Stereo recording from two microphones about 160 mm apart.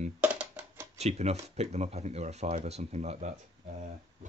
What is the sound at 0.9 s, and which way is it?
Speech, 40° right (ahead or behind).